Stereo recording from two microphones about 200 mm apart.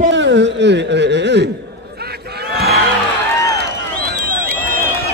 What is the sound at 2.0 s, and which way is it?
Crowd, 55° right (ahead or behind).